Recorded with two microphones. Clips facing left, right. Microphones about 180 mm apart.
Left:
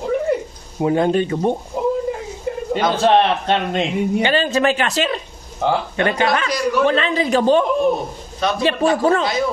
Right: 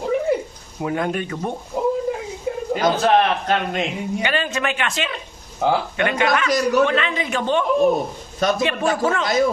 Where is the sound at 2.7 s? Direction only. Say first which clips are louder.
Left 2 dB; 30° left (ahead or behind).